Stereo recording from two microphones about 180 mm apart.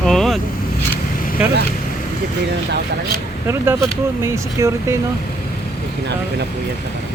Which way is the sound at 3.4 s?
15° right (ahead or behind).